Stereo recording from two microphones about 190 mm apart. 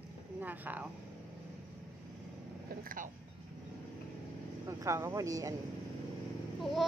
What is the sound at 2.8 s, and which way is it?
Speech, 50° right (ahead or behind).